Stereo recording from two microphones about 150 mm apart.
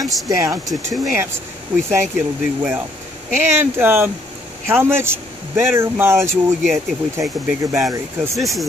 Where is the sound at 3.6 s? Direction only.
15° right (ahead or behind).